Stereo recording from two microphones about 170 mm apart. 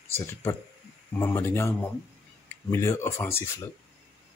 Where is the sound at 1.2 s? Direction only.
15° left (ahead or behind).